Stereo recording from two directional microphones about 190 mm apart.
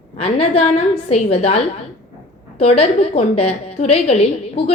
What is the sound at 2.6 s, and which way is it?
A woman's voice, 30° left (ahead or behind).